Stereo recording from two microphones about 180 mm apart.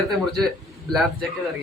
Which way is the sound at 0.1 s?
Centre (ahead or behind).